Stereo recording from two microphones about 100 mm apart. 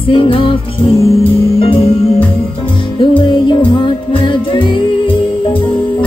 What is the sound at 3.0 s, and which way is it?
Music, 55° left (ahead or behind).